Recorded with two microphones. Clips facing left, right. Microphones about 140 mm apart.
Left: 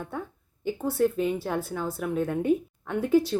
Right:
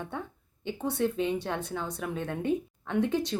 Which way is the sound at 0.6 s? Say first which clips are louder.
Left 4 dB; 5° left (ahead or behind).